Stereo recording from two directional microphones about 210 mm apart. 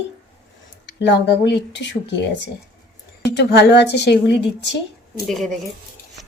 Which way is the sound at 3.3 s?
50° left (ahead or behind).